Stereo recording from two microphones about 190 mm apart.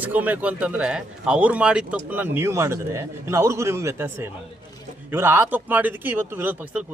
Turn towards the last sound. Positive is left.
turn(degrees=-10)  # may be behind; listen again after turning